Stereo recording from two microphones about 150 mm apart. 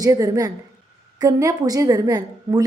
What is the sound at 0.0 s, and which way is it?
A woman's voice, 25° right (ahead or behind).